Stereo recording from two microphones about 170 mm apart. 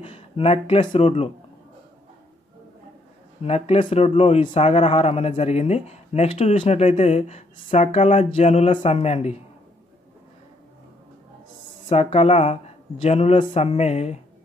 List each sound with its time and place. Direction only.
0.0 s speech: 35° left (ahead or behind)
3.4 s speech: 35° left (ahead or behind)
11.9 s speech: 35° left (ahead or behind)